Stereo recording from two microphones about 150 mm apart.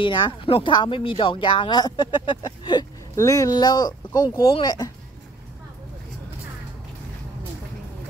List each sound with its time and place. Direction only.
0.0 s speech: 35° left (ahead or behind)